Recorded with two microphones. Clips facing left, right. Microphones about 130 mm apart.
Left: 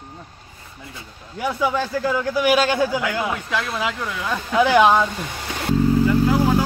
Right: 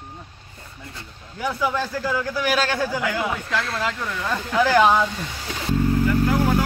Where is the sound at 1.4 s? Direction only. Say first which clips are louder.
Left 2 dB; 5° left (ahead or behind).